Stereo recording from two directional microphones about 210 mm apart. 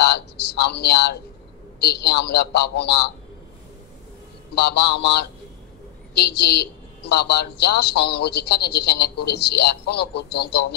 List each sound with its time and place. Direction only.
0.0 s a sound: 50° left (ahead or behind)
1.8 s a man's voice: 50° left (ahead or behind)
4.6 s a man's voice: 50° left (ahead or behind)